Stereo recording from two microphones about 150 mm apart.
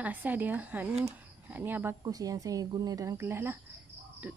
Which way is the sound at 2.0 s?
25° right (ahead or behind).